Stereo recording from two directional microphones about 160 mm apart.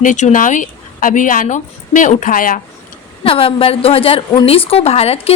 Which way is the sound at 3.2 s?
35° left (ahead or behind).